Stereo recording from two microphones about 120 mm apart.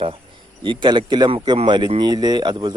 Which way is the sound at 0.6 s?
40° right (ahead or behind).